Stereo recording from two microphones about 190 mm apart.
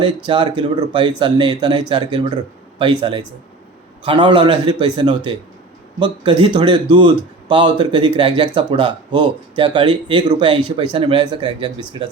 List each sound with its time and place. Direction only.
0.0 s speech: 25° right (ahead or behind)